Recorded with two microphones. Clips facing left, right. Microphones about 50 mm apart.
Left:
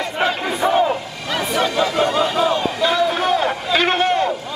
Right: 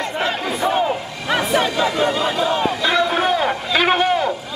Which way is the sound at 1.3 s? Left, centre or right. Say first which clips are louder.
Right 2 dB; centre.